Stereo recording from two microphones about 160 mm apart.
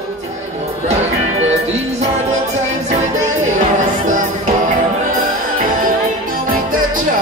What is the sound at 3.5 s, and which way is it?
Music, 50° right (ahead or behind).